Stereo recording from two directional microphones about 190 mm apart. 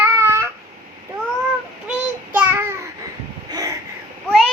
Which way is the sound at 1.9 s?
10° right (ahead or behind).